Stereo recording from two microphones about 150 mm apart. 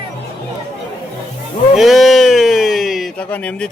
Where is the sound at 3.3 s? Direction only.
10° left (ahead or behind).